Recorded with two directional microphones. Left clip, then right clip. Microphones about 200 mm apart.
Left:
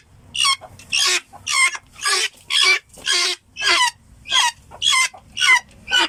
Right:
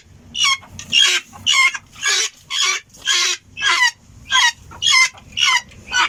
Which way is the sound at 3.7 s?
15° left (ahead or behind).